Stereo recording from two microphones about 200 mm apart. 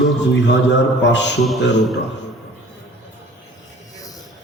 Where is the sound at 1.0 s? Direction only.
60° left (ahead or behind).